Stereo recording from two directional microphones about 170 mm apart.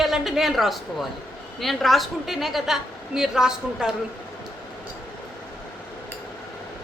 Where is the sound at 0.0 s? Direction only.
Centre (ahead or behind).